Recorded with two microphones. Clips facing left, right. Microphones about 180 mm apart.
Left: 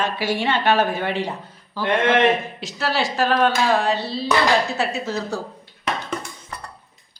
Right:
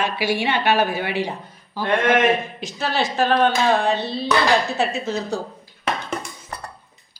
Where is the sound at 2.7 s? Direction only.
20° right (ahead or behind).